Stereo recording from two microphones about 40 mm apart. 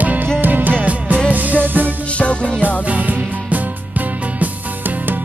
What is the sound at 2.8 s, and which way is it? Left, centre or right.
Music, right.